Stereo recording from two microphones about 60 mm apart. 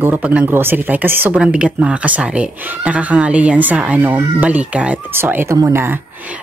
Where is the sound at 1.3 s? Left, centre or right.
Centre.